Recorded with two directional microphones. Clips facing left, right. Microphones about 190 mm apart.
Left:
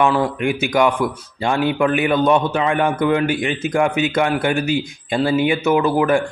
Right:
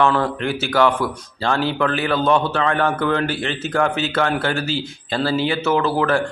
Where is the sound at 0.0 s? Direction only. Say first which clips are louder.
Left 1 dB; 15° left (ahead or behind).